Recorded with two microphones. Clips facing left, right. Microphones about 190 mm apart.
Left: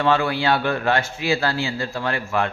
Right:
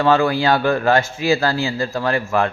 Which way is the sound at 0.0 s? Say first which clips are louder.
Right 4 dB; 40° right (ahead or behind).